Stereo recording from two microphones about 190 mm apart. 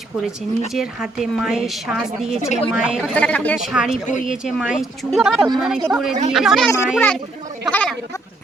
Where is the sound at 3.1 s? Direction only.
10° left (ahead or behind).